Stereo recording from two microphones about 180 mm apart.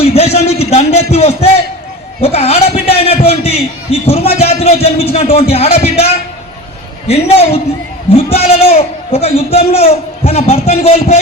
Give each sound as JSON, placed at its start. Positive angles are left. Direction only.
{"t": 0.0, "sound": "a sound", "side_deg": 35}
{"t": 2.2, "sound": "a man's voice", "side_deg": 35}
{"t": 7.1, "sound": "a man's voice", "side_deg": 35}